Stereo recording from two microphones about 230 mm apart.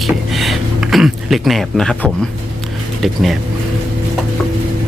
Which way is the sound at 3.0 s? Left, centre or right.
Centre.